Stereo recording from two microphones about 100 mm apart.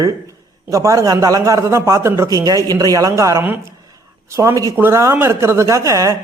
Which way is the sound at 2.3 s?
35° right (ahead or behind).